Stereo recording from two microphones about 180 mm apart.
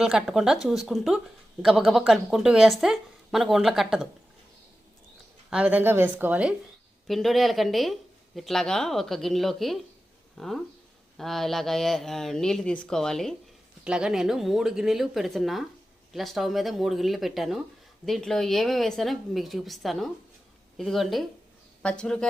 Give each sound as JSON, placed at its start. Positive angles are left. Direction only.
{"t": 0.0, "sound": "a woman's voice", "side_deg": 0}
{"t": 5.5, "sound": "a woman's voice", "side_deg": -5}